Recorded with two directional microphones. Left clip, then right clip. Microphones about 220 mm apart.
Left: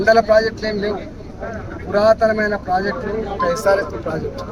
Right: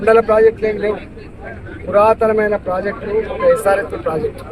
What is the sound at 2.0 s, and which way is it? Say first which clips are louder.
Speech: right 2 dB; 10° left (ahead or behind).